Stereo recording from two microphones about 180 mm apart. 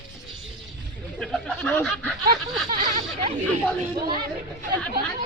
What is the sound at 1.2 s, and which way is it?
Speech, 5° left (ahead or behind).